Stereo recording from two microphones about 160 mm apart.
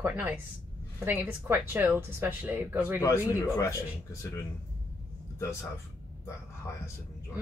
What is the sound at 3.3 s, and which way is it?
Speech, 20° left (ahead or behind).